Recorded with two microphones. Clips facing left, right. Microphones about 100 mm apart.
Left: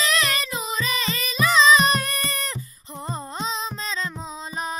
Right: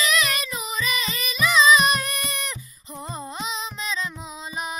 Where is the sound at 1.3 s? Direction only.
30° left (ahead or behind).